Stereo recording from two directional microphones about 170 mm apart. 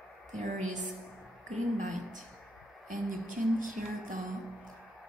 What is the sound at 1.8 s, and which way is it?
A woman's voice, 45° right (ahead or behind).